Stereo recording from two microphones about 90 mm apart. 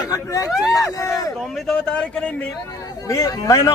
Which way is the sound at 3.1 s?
40° left (ahead or behind).